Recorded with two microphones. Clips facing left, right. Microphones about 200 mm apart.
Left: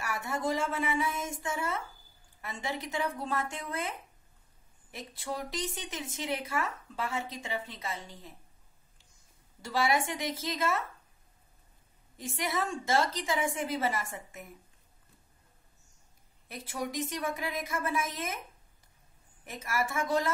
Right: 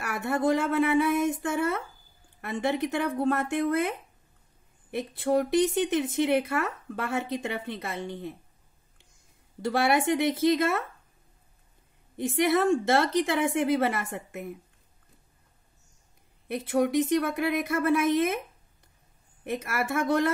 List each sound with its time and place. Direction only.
0.0 s speech: 60° right (ahead or behind)
4.9 s speech: 60° right (ahead or behind)
9.6 s speech: 60° right (ahead or behind)
12.2 s speech: 60° right (ahead or behind)
16.4 s speech: 60° right (ahead or behind)
19.4 s speech: 60° right (ahead or behind)